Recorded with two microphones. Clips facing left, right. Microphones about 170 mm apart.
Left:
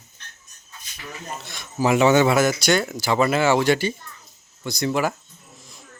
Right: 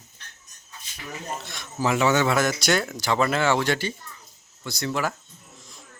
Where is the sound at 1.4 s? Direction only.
Centre (ahead or behind).